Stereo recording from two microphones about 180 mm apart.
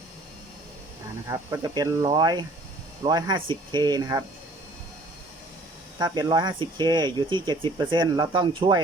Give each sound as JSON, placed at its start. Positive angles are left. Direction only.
{"t": 1.3, "sound": "speech", "side_deg": -20}
{"t": 6.0, "sound": "speech", "side_deg": -20}